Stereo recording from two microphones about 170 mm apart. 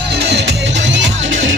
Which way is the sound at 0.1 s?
90° right.